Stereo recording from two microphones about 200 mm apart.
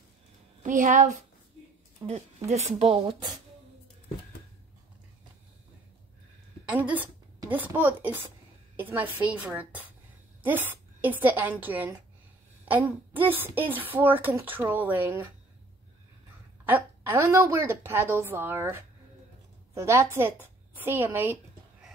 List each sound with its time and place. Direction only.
0.6 s speech: 40° right (ahead or behind)
6.6 s a woman's voice: 5° right (ahead or behind)
16.6 s a woman's voice: 10° right (ahead or behind)